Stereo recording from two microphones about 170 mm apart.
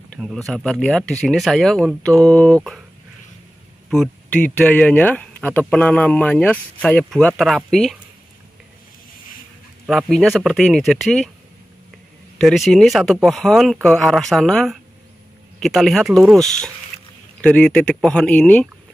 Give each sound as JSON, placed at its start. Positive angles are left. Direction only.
{"t": 0.1, "sound": "speech", "side_deg": 0}
{"t": 3.9, "sound": "speech", "side_deg": 5}
{"t": 9.8, "sound": "speech", "side_deg": 0}
{"t": 12.4, "sound": "speech", "side_deg": 0}